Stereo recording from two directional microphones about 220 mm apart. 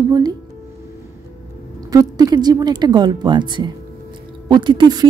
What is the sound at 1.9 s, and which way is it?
Speech, 15° right (ahead or behind).